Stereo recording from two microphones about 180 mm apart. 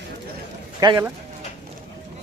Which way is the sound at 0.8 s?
20° right (ahead or behind).